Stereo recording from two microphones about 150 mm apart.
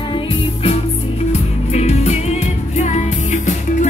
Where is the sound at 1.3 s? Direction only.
50° left (ahead or behind).